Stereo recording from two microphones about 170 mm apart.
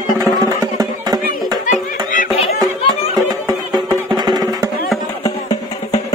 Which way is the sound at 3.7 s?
25° right (ahead or behind).